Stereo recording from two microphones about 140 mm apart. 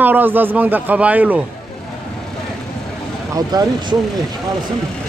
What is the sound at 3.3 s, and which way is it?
Speech, 25° right (ahead or behind).